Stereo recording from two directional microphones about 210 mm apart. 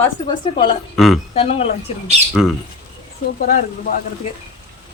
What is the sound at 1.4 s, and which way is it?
Speech, 30° left (ahead or behind).